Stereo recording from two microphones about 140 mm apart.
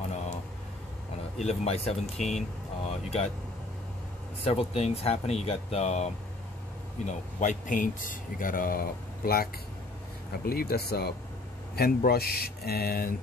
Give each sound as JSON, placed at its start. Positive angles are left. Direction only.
{"t": 1.4, "sound": "speech", "side_deg": 50}
{"t": 2.3, "sound": "vehicle", "side_deg": 45}
{"t": 4.5, "sound": "speech", "side_deg": 50}
{"t": 7.1, "sound": "a man's voice", "side_deg": 60}